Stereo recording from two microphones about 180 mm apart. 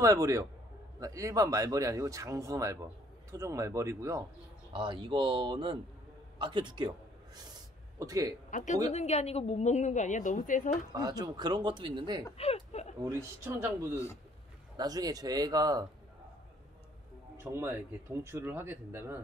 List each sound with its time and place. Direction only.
0.0 s speech: 20° right (ahead or behind)
4.7 s speech: 25° right (ahead or behind)
8.0 s speech: 20° right (ahead or behind)
8.5 s a woman's voice: 45° left (ahead or behind)
10.9 s speech: 20° right (ahead or behind)
12.4 s speech: 35° left (ahead or behind)
13.4 s speech: 15° right (ahead or behind)
14.8 s speech: 20° right (ahead or behind)
17.4 s speech: 15° right (ahead or behind)